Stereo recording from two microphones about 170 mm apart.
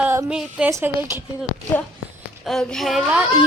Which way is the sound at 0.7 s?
15° right (ahead or behind).